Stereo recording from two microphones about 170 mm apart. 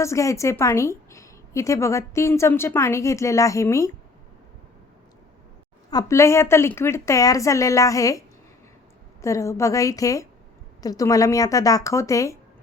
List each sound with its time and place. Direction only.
0.0 s a woman's voice: 15° left (ahead or behind)
5.9 s a woman's voice: 20° left (ahead or behind)
9.2 s a woman's voice: 15° left (ahead or behind)